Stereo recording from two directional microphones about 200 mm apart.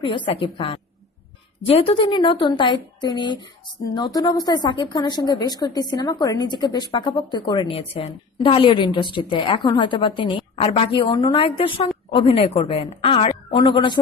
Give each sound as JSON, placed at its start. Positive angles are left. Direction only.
{"t": 0.0, "sound": "a woman's voice", "side_deg": 25}